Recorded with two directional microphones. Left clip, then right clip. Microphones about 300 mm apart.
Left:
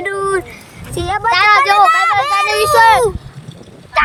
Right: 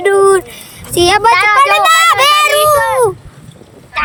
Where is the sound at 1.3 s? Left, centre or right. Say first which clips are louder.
Left 3 dB; centre.